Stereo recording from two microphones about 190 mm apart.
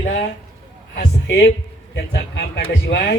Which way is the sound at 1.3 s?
60° left (ahead or behind).